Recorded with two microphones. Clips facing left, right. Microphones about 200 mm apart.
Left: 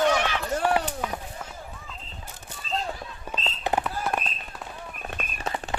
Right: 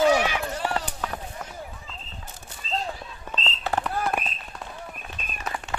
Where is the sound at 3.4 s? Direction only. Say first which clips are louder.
Left 1 dB; 15° left (ahead or behind).